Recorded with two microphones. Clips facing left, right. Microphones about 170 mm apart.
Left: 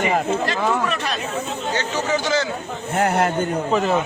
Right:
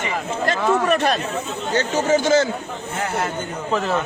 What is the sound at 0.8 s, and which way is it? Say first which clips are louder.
Speech: right 5 dB; 50° right (ahead or behind).